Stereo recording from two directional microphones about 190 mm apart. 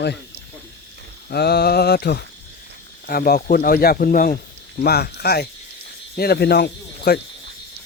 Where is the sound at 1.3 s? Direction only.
60° left (ahead or behind).